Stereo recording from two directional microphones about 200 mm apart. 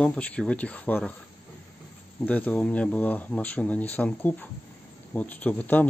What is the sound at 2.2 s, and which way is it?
Speech, 10° left (ahead or behind).